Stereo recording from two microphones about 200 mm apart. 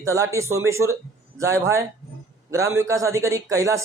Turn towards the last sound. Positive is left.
turn(degrees=-15)  # may be behind; listen again after turning